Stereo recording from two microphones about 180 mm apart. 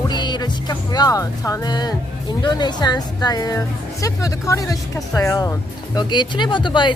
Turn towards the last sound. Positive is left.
turn(degrees=25)  # may be behind; listen again after turning